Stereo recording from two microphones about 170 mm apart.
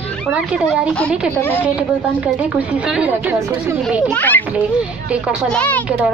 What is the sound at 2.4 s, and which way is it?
Speech, 5° right (ahead or behind).